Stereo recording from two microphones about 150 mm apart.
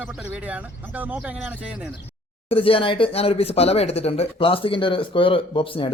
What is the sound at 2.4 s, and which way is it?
Speech, 40° left (ahead or behind).